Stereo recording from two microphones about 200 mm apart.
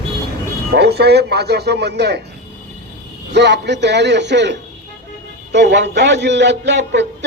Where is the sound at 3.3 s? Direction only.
55° right (ahead or behind).